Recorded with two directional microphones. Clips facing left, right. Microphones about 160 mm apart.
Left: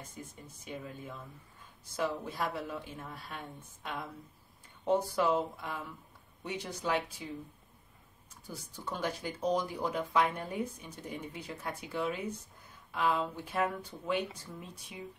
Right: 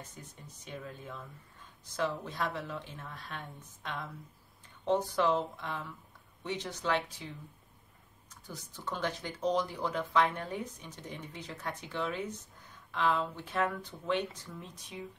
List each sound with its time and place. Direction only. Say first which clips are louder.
0.7 s speech: left 1 dB; 10° left (ahead or behind)
2.2 s speech: even; 10° left (ahead or behind)
8.5 s speech: even; 10° left (ahead or behind)